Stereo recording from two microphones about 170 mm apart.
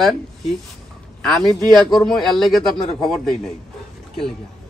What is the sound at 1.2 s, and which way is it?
A man's voice, centre (ahead or behind).